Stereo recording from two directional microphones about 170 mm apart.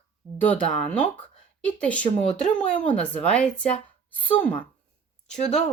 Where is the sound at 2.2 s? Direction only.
45° left (ahead or behind).